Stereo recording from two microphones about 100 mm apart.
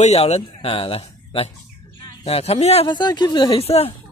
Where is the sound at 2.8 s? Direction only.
45° left (ahead or behind).